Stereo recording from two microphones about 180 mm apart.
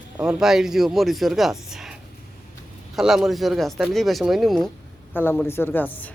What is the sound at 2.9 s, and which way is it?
Speech, centre (ahead or behind).